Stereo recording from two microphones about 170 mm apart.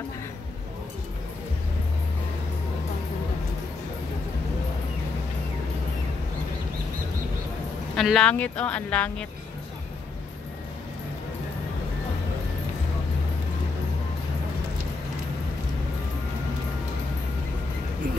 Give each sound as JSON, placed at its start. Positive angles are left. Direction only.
{"t": 7.9, "sound": "a woman's voice", "side_deg": 0}